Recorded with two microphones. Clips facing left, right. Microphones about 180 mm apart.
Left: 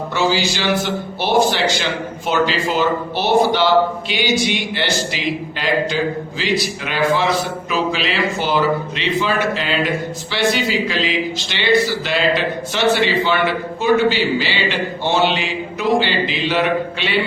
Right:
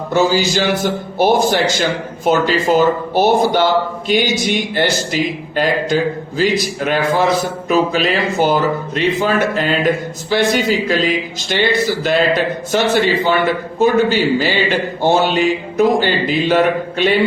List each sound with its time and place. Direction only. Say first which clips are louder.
0.1 s a man's voice: right 5 dB; 45° right (ahead or behind)